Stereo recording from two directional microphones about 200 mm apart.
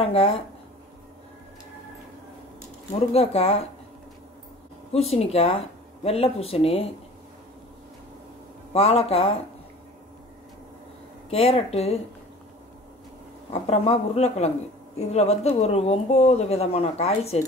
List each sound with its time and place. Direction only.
0.0 s speech: 30° left (ahead or behind)
3.1 s speech: 30° left (ahead or behind)
4.9 s speech: 30° left (ahead or behind)
8.7 s speech: 30° left (ahead or behind)
11.2 s speech: 30° left (ahead or behind)
13.5 s speech: 30° left (ahead or behind)